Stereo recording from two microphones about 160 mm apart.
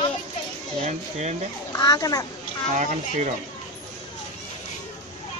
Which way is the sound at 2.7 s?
45° right (ahead or behind).